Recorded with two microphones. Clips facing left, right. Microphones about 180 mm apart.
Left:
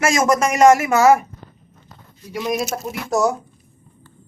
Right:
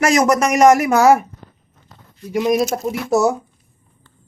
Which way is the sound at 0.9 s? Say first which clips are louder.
Right 1 dB; 5° right (ahead or behind).